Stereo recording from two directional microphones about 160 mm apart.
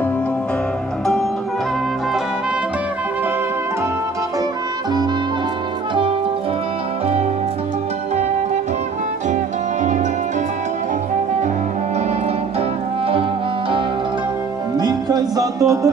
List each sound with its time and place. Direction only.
14.8 s music: 25° right (ahead or behind)